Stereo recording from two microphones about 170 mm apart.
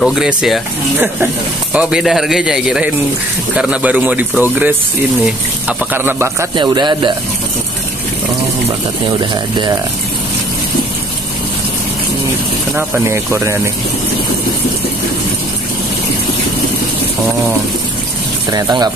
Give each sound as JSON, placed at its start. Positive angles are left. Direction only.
{"t": 0.0, "sound": "speech", "side_deg": -5}
{"t": 6.5, "sound": "a man's voice", "side_deg": -25}
{"t": 12.7, "sound": "speech", "side_deg": -15}
{"t": 18.5, "sound": "a man's voice", "side_deg": -25}